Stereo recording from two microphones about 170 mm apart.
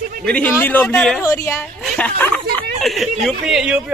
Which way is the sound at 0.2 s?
10° left (ahead or behind).